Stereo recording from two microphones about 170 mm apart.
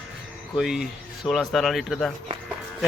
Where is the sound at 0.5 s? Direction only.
5° right (ahead or behind).